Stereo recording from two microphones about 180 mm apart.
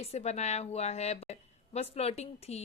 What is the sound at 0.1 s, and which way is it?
A woman's voice, 35° left (ahead or behind).